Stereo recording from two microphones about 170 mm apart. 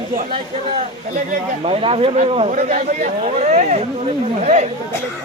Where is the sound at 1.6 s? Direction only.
35° right (ahead or behind).